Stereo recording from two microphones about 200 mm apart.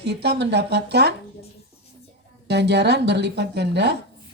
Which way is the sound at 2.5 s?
55° right (ahead or behind).